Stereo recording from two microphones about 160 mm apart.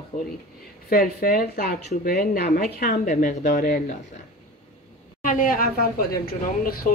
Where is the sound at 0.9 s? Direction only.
65° left (ahead or behind).